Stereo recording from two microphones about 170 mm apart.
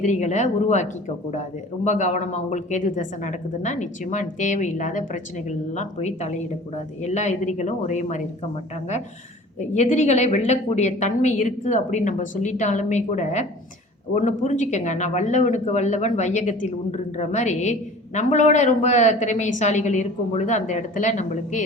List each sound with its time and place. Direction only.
0.0 s speech: 45° left (ahead or behind)
9.6 s speech: 45° left (ahead or behind)